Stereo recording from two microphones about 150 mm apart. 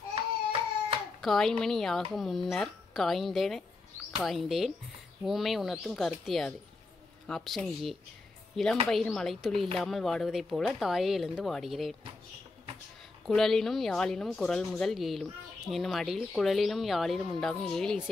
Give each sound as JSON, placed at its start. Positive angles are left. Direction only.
{"t": 0.1, "sound": "a sound", "side_deg": -40}
{"t": 1.2, "sound": "a woman's voice", "side_deg": 0}
{"t": 13.3, "sound": "a woman's voice", "side_deg": 0}